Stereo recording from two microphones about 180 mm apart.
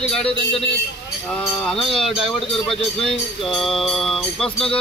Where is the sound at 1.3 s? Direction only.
5° left (ahead or behind).